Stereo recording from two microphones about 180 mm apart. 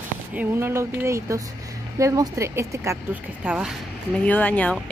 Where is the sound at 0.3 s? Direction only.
10° right (ahead or behind).